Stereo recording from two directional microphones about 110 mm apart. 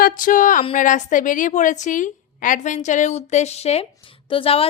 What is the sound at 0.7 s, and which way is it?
A woman's voice, 90° left.